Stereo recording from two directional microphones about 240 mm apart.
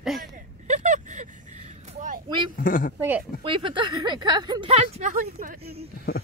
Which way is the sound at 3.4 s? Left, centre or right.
Right.